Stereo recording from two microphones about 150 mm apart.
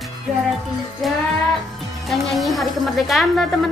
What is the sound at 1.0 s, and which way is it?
Speech, centre (ahead or behind).